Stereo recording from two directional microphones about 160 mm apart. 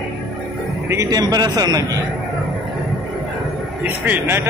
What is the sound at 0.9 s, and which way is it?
Speech, 20° right (ahead or behind).